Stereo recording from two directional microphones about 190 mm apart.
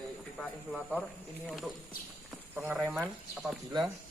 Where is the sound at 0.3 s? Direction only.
Centre (ahead or behind).